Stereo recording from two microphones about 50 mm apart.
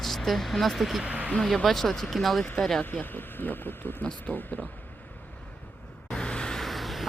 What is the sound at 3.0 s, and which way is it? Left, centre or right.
Speech, left.